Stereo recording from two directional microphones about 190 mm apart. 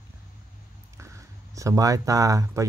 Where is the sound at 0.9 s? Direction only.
15° right (ahead or behind).